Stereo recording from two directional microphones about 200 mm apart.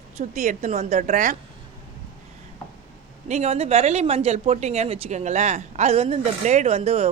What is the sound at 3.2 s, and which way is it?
Speech, 35° right (ahead or behind).